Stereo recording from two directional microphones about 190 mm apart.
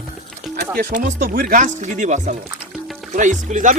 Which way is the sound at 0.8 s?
45° right (ahead or behind).